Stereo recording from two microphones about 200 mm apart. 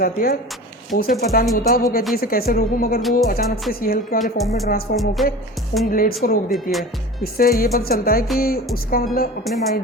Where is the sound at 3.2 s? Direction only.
45° left (ahead or behind).